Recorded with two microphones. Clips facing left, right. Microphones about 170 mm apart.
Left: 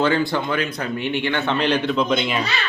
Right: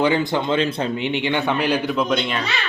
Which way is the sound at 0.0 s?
20° right (ahead or behind).